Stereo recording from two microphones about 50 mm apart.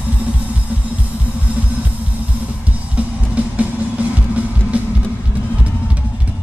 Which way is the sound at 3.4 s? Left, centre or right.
Right.